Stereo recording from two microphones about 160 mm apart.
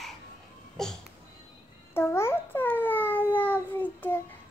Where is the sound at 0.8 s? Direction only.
5° left (ahead or behind).